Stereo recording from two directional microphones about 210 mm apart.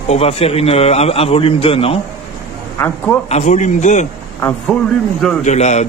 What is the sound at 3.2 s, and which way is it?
Speech, 30° left (ahead or behind).